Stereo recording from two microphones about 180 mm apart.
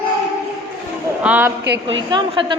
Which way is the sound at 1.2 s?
10° right (ahead or behind).